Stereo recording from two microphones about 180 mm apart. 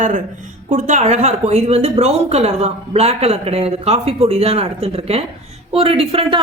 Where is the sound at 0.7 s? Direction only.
45° right (ahead or behind).